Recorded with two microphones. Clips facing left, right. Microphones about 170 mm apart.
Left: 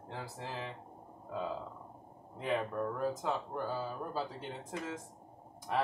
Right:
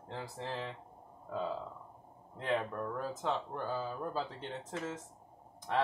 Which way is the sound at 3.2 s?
10° left (ahead or behind).